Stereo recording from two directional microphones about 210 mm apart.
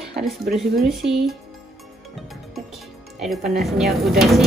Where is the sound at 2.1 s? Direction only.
Centre (ahead or behind).